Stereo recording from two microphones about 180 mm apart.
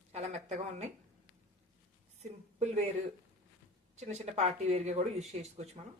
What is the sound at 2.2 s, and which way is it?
Speech, 40° right (ahead or behind).